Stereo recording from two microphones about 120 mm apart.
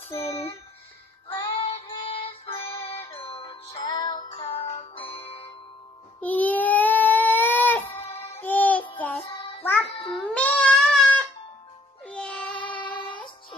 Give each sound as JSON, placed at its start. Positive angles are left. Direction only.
{"t": 0.1, "sound": "speech", "side_deg": 55}
{"t": 1.3, "sound": "child singing", "side_deg": 50}
{"t": 3.1, "sound": "music", "side_deg": 55}
{"t": 4.3, "sound": "music", "side_deg": 55}
{"t": 6.2, "sound": "baby cry", "side_deg": 15}
{"t": 8.4, "sound": "child singing", "side_deg": 15}
{"t": 10.3, "sound": "goat", "side_deg": 10}
{"t": 12.1, "sound": "music", "side_deg": 10}
{"t": 12.8, "sound": "music", "side_deg": 40}